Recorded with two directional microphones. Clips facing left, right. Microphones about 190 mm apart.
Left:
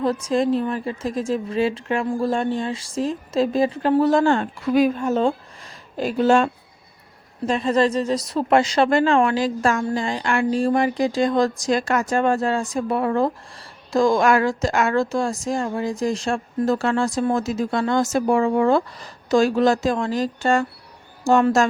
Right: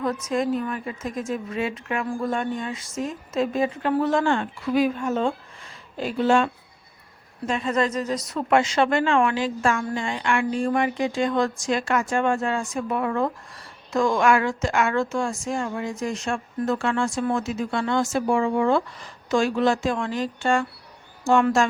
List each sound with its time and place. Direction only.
0.0 s a woman's voice: 30° left (ahead or behind)